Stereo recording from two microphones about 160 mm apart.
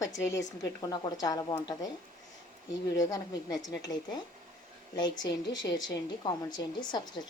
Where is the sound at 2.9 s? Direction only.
20° left (ahead or behind).